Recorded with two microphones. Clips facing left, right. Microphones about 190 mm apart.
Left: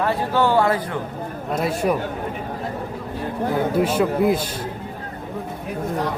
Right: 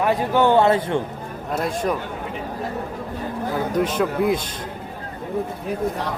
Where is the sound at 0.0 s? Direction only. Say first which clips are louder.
Right 2 dB; 15° right (ahead or behind).